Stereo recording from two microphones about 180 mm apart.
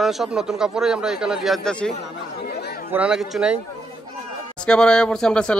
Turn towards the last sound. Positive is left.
turn(degrees=5)  # may be behind; listen again after turning